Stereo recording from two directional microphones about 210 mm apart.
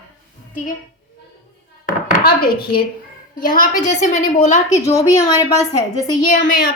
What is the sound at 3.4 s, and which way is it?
A woman's voice, 40° left (ahead or behind).